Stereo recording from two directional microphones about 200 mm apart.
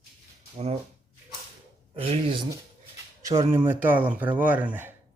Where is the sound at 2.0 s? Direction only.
30° right (ahead or behind).